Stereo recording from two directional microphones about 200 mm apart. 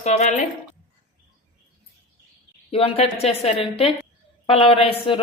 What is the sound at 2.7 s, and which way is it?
A woman's voice, 30° left (ahead or behind).